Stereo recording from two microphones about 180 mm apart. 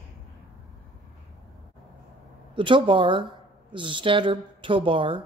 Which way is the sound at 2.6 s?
25° right (ahead or behind).